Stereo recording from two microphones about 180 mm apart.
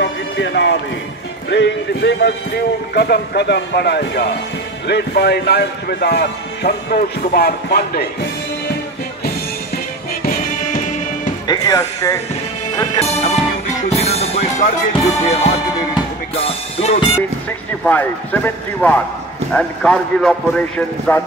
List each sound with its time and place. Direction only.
0.0 s a sound: 85° left
1.5 s speech: 75° left (ahead or behind); by 8.0 s 55° left (ahead or behind)
10.2 s music: 50° left (ahead or behind)
11.4 s speech: 20° left (ahead or behind)
13.0 s music: 35° left (ahead or behind)
17.5 s a man's voice: 10° left (ahead or behind)